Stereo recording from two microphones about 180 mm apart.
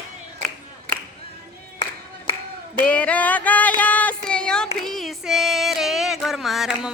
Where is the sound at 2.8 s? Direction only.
5° left (ahead or behind).